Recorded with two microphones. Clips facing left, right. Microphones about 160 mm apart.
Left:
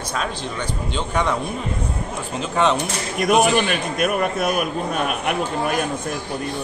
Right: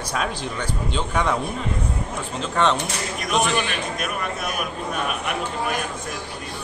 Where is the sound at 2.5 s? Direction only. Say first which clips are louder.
Left 2 dB; 5° left (ahead or behind).